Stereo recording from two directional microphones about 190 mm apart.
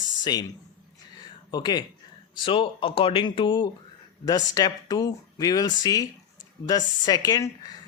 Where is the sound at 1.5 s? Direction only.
20° left (ahead or behind).